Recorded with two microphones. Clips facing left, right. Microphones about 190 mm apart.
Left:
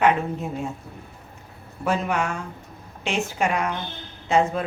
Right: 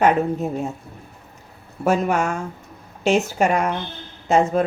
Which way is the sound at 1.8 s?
45° right (ahead or behind).